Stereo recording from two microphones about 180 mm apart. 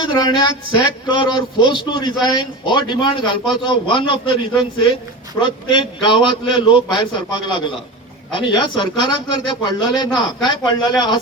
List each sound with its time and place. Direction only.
0.0 s a man's voice: 25° left (ahead or behind)